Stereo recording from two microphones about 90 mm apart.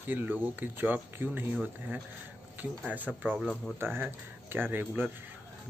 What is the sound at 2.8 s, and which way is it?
Speech, 20° right (ahead or behind).